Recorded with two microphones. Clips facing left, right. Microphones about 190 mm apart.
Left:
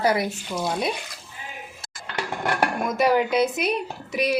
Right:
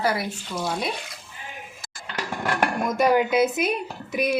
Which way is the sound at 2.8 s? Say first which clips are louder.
Right 1 dB; 5° left (ahead or behind).